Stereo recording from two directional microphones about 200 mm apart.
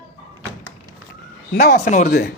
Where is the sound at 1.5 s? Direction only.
50° left (ahead or behind).